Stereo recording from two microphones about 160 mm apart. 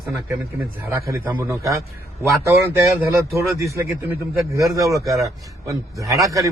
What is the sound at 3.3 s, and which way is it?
Speech, 20° right (ahead or behind).